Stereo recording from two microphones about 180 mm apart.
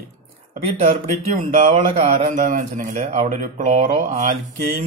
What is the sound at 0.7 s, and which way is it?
Speech, 40° right (ahead or behind).